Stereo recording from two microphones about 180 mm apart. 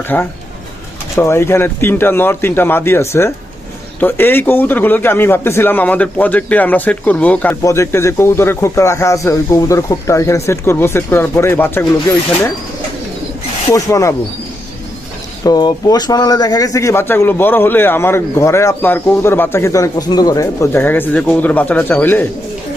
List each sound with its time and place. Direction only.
0.1 s speech: 10° left (ahead or behind)
13.7 s speech: 15° left (ahead or behind)
15.4 s speech: 20° left (ahead or behind)